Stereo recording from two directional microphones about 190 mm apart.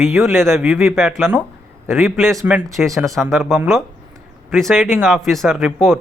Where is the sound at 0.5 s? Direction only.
15° right (ahead or behind).